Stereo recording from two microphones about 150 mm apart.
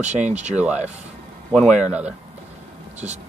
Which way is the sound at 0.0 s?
50° right (ahead or behind).